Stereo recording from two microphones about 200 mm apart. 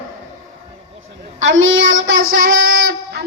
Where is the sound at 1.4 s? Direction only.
75° right (ahead or behind).